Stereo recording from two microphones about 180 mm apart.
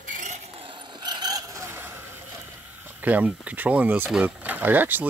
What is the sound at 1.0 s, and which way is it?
Vehicle, 20° right (ahead or behind).